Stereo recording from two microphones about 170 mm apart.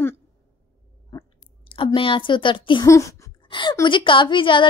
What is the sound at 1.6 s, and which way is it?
Speech, 30° left (ahead or behind).